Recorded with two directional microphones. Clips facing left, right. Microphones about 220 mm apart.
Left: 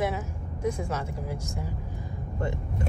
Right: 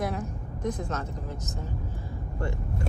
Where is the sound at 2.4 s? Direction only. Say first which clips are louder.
Left 2 dB; 20° left (ahead or behind).